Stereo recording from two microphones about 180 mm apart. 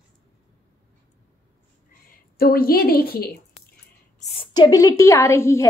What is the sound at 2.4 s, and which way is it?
Speech, 55° left (ahead or behind).